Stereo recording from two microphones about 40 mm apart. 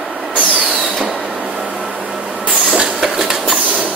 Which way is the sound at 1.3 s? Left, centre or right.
Right.